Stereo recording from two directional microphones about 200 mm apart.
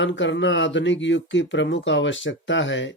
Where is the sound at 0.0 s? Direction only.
65° left (ahead or behind).